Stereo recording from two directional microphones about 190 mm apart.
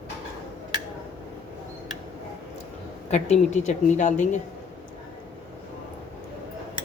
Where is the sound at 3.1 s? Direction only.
35° left (ahead or behind).